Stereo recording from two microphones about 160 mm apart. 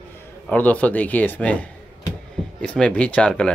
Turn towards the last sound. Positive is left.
turn(degrees=5)  # may be behind; listen again after turning